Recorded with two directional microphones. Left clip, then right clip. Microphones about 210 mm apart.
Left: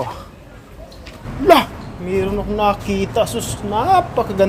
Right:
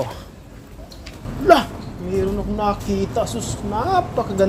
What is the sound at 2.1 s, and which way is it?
Speech, 30° left (ahead or behind).